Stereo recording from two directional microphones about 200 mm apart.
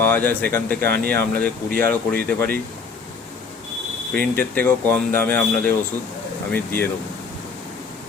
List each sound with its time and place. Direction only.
0.0 s speech: 10° left (ahead or behind)
0.8 s speech: 50° right (ahead or behind)
1.1 s speech: 10° left (ahead or behind)
4.1 s speech: 10° left (ahead or behind)